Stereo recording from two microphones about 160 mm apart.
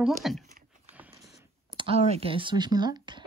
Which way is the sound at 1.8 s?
40° right (ahead or behind).